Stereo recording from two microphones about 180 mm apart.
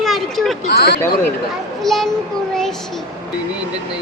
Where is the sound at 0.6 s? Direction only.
65° left (ahead or behind).